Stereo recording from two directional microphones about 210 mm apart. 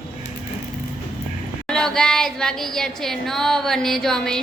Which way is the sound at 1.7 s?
5° left (ahead or behind).